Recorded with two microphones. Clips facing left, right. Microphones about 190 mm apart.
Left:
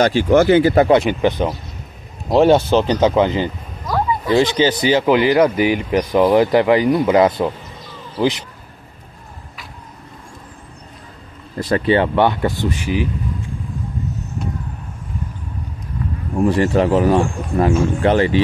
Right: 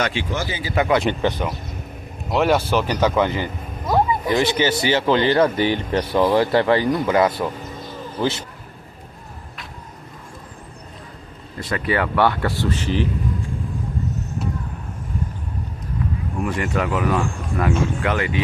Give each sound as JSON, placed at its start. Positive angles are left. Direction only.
{"t": 0.0, "sound": "speech", "side_deg": 40}
{"t": 0.3, "sound": "speech", "side_deg": 60}
{"t": 0.7, "sound": "speech", "side_deg": 30}
{"t": 1.2, "sound": "speech", "side_deg": 20}
{"t": 3.8, "sound": "a sound", "side_deg": -25}
{"t": 4.4, "sound": "speech", "side_deg": 20}
{"t": 11.5, "sound": "speech", "side_deg": 35}
{"t": 16.3, "sound": "speech", "side_deg": 30}